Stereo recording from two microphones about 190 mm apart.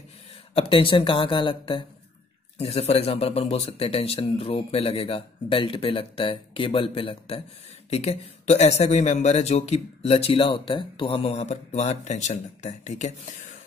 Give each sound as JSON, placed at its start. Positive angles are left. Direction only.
{"t": 0.6, "sound": "speech", "side_deg": 30}